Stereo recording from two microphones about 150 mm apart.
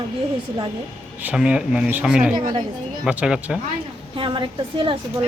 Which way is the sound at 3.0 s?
5° right (ahead or behind).